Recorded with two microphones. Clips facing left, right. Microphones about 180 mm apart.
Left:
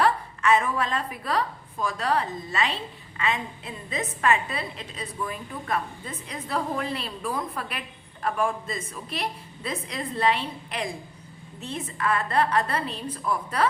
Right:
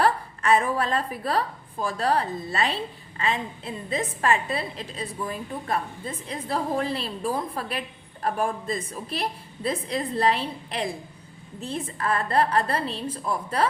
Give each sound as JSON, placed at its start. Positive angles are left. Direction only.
{"t": 0.0, "sound": "a woman's voice", "side_deg": -35}